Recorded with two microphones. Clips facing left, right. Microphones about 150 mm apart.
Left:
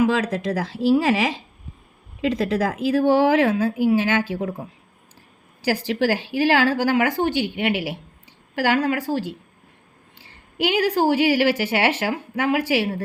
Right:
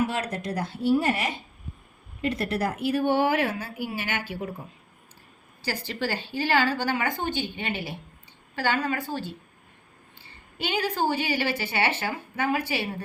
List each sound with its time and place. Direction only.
0.0 s a woman's voice: 90° left
5.6 s a woman's voice: 90° left